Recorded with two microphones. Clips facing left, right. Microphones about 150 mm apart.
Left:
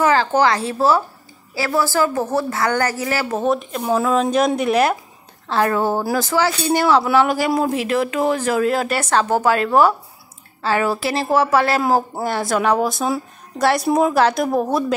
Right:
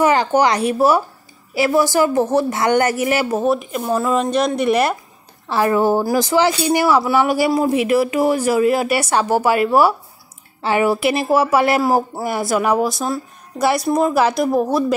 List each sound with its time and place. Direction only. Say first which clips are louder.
0.0 s speech: right 1 dB; 15° right (ahead or behind)
3.3 s speech: right 2 dB; 5° right (ahead or behind)